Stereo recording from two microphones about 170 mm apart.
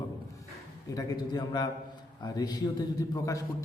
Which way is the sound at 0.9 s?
20° left (ahead or behind).